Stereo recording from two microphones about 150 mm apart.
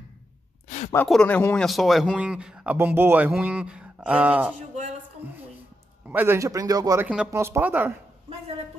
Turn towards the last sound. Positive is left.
turn(degrees=-10)  # may be behind; listen again after turning